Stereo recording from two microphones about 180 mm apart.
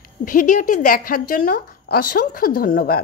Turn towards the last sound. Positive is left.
turn(degrees=55)  # may be behind; listen again after turning